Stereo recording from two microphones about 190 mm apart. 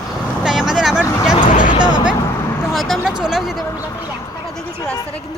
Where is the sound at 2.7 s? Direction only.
Centre (ahead or behind).